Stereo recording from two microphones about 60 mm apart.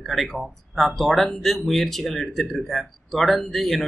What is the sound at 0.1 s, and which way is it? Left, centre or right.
Speech, centre.